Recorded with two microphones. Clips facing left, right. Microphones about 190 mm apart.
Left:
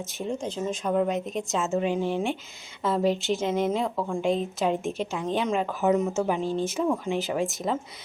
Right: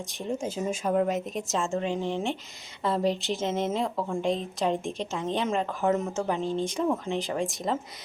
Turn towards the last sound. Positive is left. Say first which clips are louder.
# left 2 dB
turn(degrees=0)  # may be behind; listen again after turning